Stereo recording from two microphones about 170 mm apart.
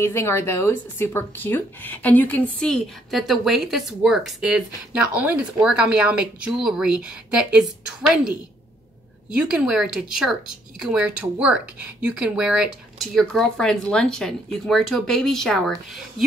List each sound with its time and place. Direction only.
0.0 s speech: 15° left (ahead or behind); by 8.3 s 5° right (ahead or behind)
9.5 s speech: 5° right (ahead or behind)